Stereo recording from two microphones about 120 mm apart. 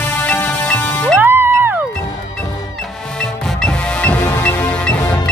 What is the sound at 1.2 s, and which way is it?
Music, 20° right (ahead or behind).